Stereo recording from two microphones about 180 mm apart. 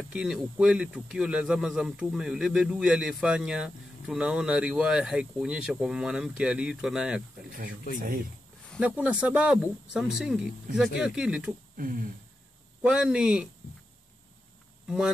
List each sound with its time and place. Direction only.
0.1 s speech: 5° right (ahead or behind)
8.7 s speech: 5° right (ahead or behind)
11.7 s a sound: 50° right (ahead or behind)
12.9 s speech: 5° right (ahead or behind)